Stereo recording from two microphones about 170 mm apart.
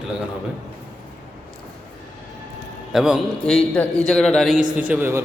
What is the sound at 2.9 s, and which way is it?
A man's voice, 5° right (ahead or behind).